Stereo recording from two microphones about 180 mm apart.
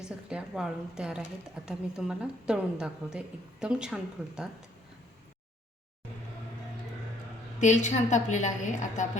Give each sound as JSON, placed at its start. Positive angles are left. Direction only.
{"t": 0.0, "sound": "a woman's voice", "side_deg": -5}
{"t": 7.6, "sound": "a woman's voice", "side_deg": 40}